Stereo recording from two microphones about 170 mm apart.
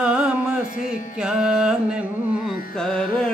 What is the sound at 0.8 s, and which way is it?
Music, 5° right (ahead or behind).